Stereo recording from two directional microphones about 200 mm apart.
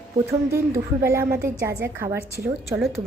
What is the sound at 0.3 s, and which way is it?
A woman's voice, 15° right (ahead or behind).